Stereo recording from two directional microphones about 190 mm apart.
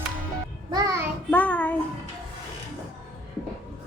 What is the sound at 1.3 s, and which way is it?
Child singing, 10° left (ahead or behind).